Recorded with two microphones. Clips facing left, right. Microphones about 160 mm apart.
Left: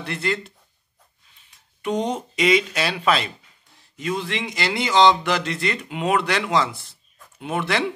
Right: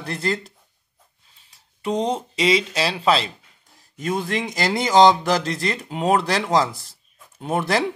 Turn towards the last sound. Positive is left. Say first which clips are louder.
# right 2 dB
turn(degrees=-40)  # may be behind; listen again after turning